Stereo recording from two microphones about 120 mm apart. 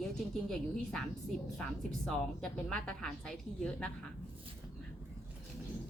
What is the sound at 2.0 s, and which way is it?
A woman's voice, 5° left (ahead or behind).